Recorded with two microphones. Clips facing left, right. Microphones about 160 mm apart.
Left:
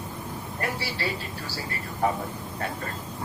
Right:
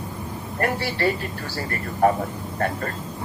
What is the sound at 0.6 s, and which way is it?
Speech, 55° right (ahead or behind).